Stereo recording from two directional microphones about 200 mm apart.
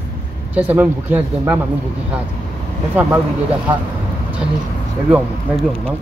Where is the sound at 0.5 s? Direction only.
10° right (ahead or behind).